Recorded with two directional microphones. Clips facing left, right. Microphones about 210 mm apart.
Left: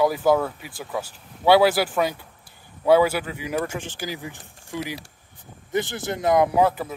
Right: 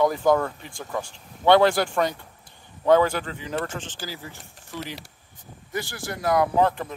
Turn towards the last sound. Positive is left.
turn(degrees=5)  # may be behind; listen again after turning